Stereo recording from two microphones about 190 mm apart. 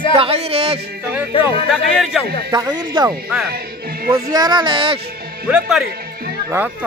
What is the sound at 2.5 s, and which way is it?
Speech, 25° right (ahead or behind).